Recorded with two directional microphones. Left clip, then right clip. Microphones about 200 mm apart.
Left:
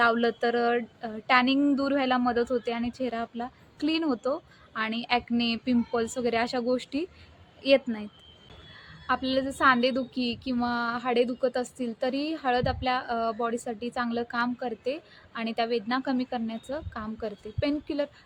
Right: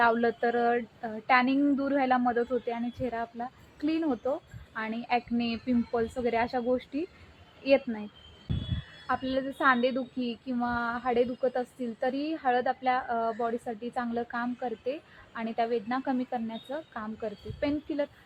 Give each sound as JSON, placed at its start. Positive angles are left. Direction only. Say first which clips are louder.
{"t": 0.0, "sound": "speech", "louder": "left 1 dB", "side_deg": 15}
{"t": 9.0, "sound": "a woman's voice", "louder": "left 3 dB", "side_deg": 20}